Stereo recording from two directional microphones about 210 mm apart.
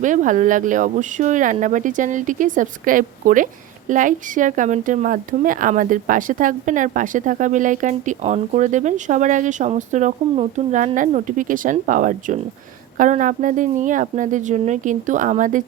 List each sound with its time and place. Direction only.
0.0 s speech: 35° right (ahead or behind)